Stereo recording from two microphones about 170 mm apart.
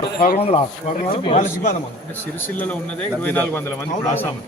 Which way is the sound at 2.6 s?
10° left (ahead or behind).